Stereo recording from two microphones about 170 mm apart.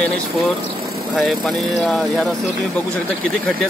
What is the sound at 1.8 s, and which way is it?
Speech, centre (ahead or behind).